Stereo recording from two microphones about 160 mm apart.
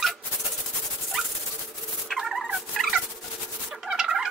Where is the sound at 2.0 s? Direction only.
Centre (ahead or behind).